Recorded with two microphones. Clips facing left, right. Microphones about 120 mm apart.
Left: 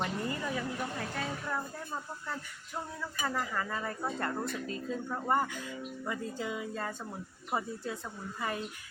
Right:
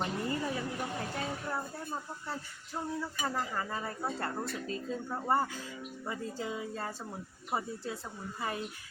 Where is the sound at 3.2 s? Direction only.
30° right (ahead or behind).